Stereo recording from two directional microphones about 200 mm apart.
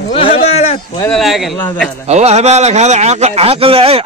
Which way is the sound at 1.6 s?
10° left (ahead or behind).